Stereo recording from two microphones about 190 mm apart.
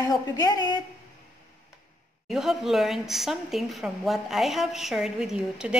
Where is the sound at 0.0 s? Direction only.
20° left (ahead or behind).